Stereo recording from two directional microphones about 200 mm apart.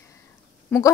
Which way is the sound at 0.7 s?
10° left (ahead or behind).